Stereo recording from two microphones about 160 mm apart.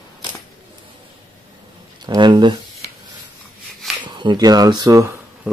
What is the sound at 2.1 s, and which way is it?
Speech, 30° right (ahead or behind).